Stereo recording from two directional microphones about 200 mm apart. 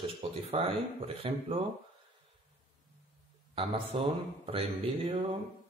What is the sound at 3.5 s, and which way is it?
Speech, 25° right (ahead or behind).